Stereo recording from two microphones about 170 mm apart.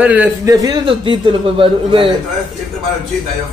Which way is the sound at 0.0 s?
10° right (ahead or behind).